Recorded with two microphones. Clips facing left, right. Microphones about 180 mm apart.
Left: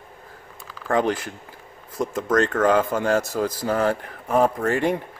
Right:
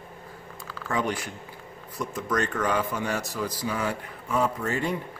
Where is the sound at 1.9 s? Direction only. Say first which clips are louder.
Left 7 dB; 50° left (ahead or behind); by 5.0 s 70° left (ahead or behind).